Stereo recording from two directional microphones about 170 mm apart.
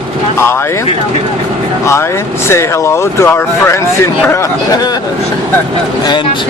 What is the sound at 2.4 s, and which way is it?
Speech, 15° left (ahead or behind).